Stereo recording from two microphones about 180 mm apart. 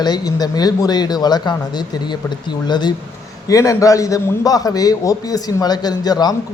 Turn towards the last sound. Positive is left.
turn(degrees=20)  # may be behind; listen again after turning